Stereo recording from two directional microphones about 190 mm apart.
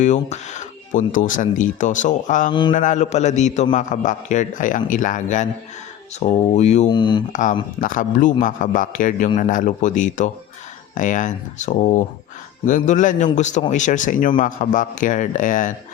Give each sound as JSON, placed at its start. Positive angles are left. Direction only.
{"t": 0.0, "sound": "a man's voice", "side_deg": 40}
{"t": 2.5, "sound": "speech", "side_deg": 25}
{"t": 2.7, "sound": "a man's voice", "side_deg": 40}
{"t": 6.9, "sound": "speech", "side_deg": 25}
{"t": 7.8, "sound": "a man's voice", "side_deg": 45}